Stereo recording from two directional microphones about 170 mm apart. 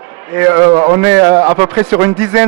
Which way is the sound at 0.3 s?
15° right (ahead or behind).